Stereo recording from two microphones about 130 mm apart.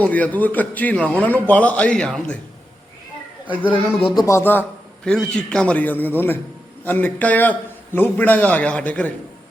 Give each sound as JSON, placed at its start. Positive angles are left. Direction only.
{"t": 0.0, "sound": "a man's voice", "side_deg": 10}
{"t": 3.7, "sound": "speech", "side_deg": 40}
{"t": 5.0, "sound": "a man's voice", "side_deg": 5}